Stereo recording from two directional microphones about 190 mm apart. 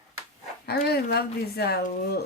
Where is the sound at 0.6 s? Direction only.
55° left (ahead or behind).